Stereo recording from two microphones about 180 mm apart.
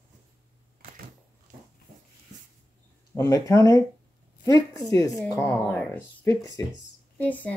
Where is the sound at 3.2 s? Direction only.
15° left (ahead or behind).